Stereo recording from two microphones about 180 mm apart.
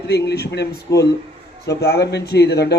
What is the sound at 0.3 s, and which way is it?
A man's voice, 65° left (ahead or behind).